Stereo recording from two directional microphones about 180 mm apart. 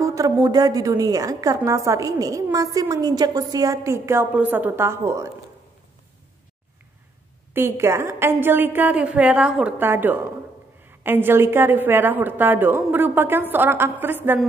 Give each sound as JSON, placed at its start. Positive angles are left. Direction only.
{"t": 0.0, "sound": "a woman's voice", "side_deg": -20}
{"t": 7.5, "sound": "a woman's voice", "side_deg": -15}